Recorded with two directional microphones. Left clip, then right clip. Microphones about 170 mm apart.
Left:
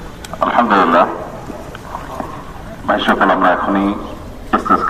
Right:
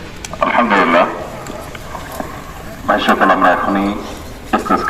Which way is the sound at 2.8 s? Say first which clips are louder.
Right 1 dB; 10° right (ahead or behind).